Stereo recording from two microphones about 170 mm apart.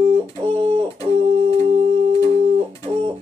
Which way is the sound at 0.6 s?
35° right (ahead or behind).